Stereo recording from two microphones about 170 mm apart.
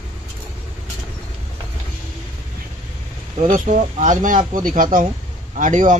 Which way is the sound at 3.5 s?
50° right (ahead or behind).